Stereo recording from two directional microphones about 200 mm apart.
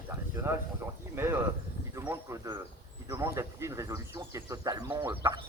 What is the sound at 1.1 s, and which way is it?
Speech, 10° right (ahead or behind).